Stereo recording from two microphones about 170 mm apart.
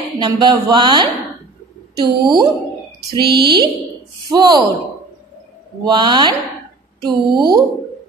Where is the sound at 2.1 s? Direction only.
25° right (ahead or behind).